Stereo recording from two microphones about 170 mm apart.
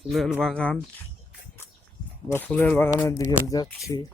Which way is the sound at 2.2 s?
10° left (ahead or behind).